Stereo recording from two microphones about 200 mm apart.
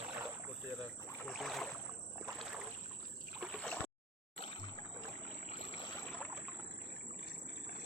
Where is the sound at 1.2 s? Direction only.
Centre (ahead or behind).